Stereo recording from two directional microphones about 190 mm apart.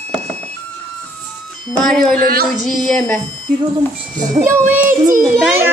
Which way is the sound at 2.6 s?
Centre (ahead or behind).